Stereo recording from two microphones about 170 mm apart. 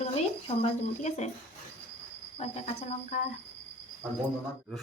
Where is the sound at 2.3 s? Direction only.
40° left (ahead or behind).